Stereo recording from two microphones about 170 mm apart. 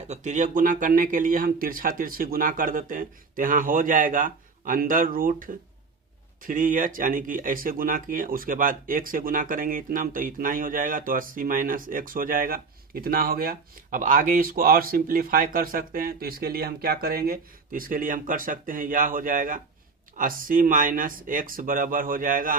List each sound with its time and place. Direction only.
0.1 s speech: 45° right (ahead or behind)